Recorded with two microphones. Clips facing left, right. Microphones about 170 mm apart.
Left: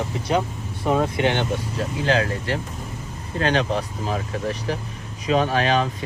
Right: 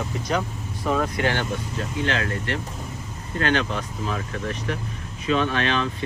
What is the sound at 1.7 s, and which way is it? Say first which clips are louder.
Speech: left 5 dB; 35° left (ahead or behind).